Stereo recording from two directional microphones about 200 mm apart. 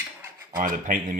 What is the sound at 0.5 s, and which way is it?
Speech, 40° right (ahead or behind).